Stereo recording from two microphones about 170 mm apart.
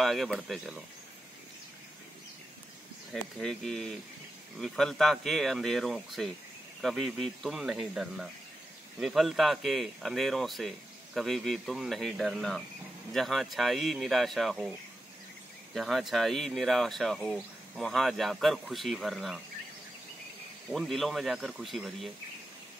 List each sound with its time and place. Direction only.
0.0 s speech: centre (ahead or behind)
3.1 s speech: centre (ahead or behind)
15.7 s speech: centre (ahead or behind)
20.7 s speech: centre (ahead or behind)